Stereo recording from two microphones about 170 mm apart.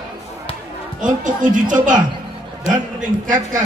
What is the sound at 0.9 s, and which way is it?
A man's voice, 50° right (ahead or behind).